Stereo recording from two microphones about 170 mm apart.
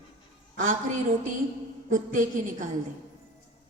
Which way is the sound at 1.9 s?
50° right (ahead or behind).